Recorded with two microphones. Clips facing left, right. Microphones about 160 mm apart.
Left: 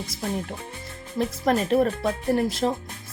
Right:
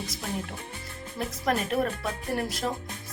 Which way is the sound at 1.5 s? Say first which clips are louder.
Left 5 dB; 30° left (ahead or behind).